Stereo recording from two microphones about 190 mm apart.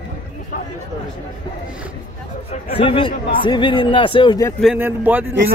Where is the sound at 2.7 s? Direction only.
30° left (ahead or behind).